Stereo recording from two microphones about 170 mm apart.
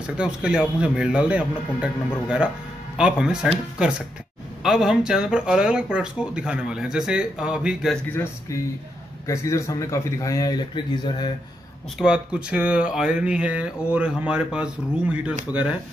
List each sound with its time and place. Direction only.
0.0 s speech: 5° right (ahead or behind)
8.1 s speech: 15° left (ahead or behind)
12.0 s speech: 5° right (ahead or behind)